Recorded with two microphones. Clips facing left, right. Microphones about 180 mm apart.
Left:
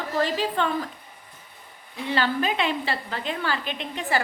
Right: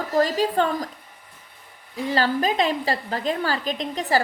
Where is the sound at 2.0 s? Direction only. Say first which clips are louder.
Right 3 dB; 40° right (ahead or behind).